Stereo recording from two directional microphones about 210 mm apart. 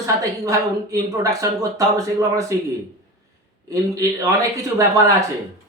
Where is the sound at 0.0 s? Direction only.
15° right (ahead or behind).